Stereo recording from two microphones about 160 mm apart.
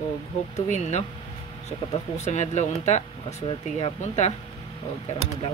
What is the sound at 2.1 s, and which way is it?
Speech, 45° left (ahead or behind).